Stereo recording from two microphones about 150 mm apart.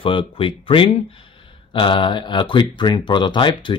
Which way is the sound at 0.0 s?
35° left (ahead or behind).